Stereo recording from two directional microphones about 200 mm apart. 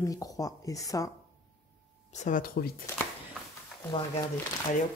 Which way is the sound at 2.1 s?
40° left (ahead or behind).